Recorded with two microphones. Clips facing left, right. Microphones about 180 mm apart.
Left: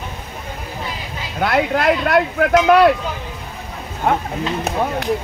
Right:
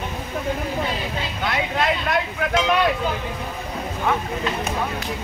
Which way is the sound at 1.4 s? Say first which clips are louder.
Left 7 dB; 65° left (ahead or behind).